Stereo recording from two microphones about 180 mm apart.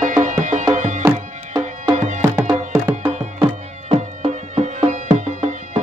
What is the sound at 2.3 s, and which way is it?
Music, 15° right (ahead or behind).